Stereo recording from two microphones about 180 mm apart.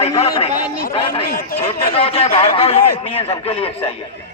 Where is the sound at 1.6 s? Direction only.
35° left (ahead or behind).